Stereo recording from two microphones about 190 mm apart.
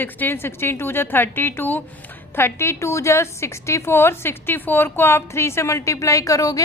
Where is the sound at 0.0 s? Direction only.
10° left (ahead or behind).